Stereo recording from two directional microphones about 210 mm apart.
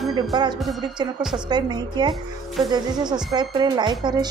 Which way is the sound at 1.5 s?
20° right (ahead or behind).